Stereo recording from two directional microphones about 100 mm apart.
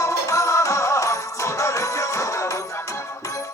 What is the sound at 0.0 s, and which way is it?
Music, 30° left (ahead or behind).